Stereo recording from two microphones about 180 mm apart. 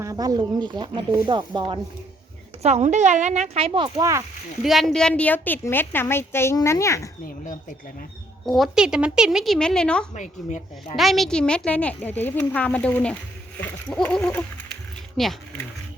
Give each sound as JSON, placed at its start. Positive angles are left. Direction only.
{"t": 0.0, "sound": "speech", "side_deg": -20}
{"t": 2.6, "sound": "speech", "side_deg": -40}
{"t": 4.6, "sound": "a woman's voice", "side_deg": 0}
{"t": 7.3, "sound": "speech", "side_deg": 45}
{"t": 8.4, "sound": "a woman's voice", "side_deg": 0}
{"t": 10.2, "sound": "a woman's voice", "side_deg": 40}
{"t": 10.9, "sound": "a woman's voice", "side_deg": 0}